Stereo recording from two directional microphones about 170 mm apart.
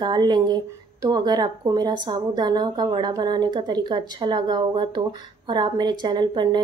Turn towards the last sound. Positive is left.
turn(degrees=-25)  # may be behind; listen again after turning